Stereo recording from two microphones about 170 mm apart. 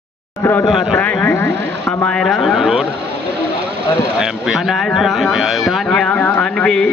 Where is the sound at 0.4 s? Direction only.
15° left (ahead or behind).